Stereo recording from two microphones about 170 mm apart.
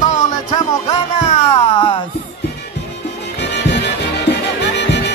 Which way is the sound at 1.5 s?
30° left (ahead or behind).